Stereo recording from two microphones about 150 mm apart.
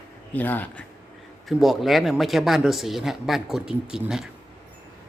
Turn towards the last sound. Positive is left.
turn(degrees=-5)  # may be behind; listen again after turning